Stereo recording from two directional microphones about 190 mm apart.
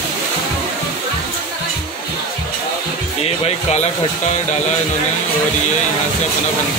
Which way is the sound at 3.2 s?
35° left (ahead or behind).